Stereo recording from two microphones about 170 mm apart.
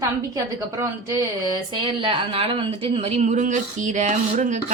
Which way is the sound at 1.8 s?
30° right (ahead or behind).